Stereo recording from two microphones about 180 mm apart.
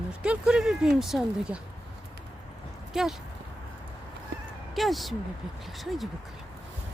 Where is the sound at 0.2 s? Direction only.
5° right (ahead or behind).